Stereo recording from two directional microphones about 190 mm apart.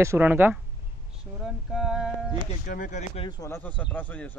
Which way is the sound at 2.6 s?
45° left (ahead or behind).